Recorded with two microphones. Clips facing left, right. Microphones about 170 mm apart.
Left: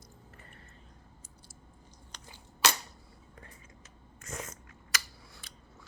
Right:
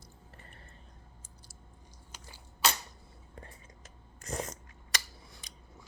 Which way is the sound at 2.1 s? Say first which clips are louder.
Even; 5° right (ahead or behind).